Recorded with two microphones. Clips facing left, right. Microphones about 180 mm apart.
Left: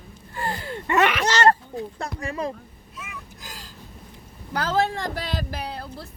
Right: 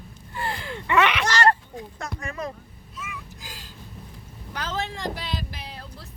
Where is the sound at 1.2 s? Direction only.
20° left (ahead or behind).